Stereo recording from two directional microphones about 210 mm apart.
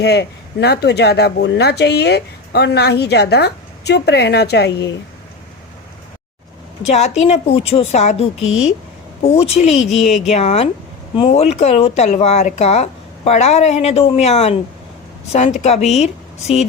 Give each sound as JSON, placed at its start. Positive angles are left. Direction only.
{"t": 0.0, "sound": "speech", "side_deg": 50}
{"t": 6.8, "sound": "a woman's voice", "side_deg": 30}